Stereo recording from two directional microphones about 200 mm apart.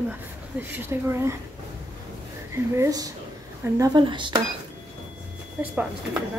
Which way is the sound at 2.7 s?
15° right (ahead or behind).